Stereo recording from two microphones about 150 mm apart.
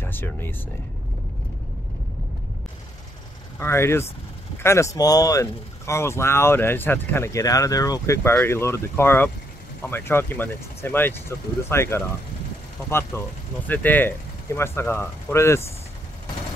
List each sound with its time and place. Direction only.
0.0 s speech: 15° left (ahead or behind)
3.5 s speech: 15° left (ahead or behind)
13.1 s speech: 15° left (ahead or behind)